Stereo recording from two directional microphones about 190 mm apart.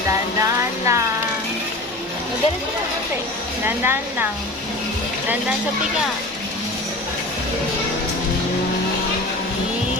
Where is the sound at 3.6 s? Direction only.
10° right (ahead or behind).